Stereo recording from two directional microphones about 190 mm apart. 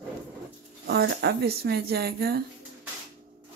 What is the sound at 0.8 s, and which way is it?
Speech, 60° right (ahead or behind).